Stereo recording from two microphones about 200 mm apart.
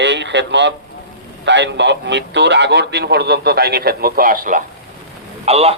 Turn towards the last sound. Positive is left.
turn(degrees=-30)  # may be behind; listen again after turning